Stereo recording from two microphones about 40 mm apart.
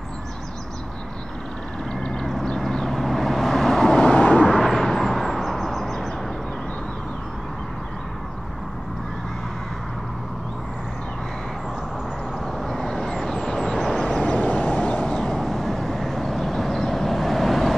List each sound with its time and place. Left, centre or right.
2.4 s vehicle: centre
4.1 s vehicle: left
4.6 s vehicle: centre
12.5 s vehicle: centre
13.9 s vehicle: left
14.3 s vehicle: left
14.8 s a sound: left
15.1 s vehicle: centre